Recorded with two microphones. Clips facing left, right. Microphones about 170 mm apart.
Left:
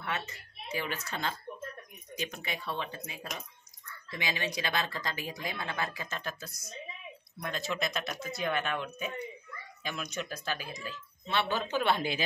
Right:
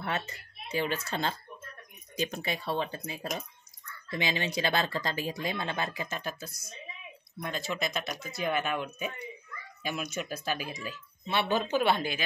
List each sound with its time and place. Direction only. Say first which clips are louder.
0.0 s a woman's voice: right 3 dB; 35° right (ahead or behind)
6.0 s speech: right 2 dB; 10° right (ahead or behind)